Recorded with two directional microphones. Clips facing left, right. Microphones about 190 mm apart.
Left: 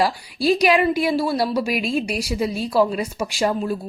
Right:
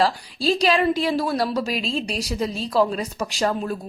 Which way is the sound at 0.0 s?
15° left (ahead or behind).